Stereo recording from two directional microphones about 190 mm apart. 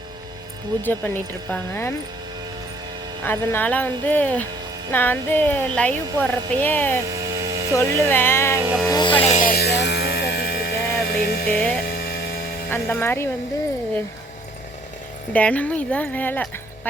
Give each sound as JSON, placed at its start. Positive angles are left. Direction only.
{"t": 0.8, "sound": "speech", "side_deg": 10}
{"t": 3.2, "sound": "speech", "side_deg": 10}
{"t": 7.1, "sound": "vehicle", "side_deg": -20}
{"t": 8.1, "sound": "speech", "side_deg": 10}
{"t": 8.5, "sound": "music", "side_deg": -10}
{"t": 8.9, "sound": "music", "side_deg": 25}
{"t": 9.5, "sound": "music", "side_deg": 60}
{"t": 11.4, "sound": "speech", "side_deg": 10}
{"t": 11.8, "sound": "a sound", "side_deg": 55}
{"t": 12.7, "sound": "speech", "side_deg": 10}
{"t": 15.3, "sound": "speech", "side_deg": 5}